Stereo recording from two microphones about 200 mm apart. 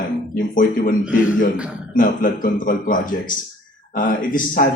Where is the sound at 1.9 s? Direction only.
40° left (ahead or behind).